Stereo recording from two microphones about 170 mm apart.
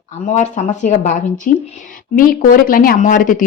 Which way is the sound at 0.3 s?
45° left (ahead or behind).